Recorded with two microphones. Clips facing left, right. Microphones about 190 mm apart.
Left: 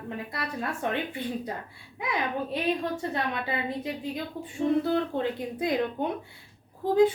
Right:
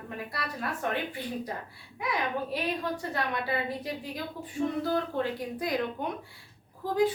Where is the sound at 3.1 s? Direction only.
20° left (ahead or behind).